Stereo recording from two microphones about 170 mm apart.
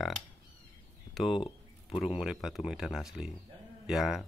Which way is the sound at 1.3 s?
30° left (ahead or behind).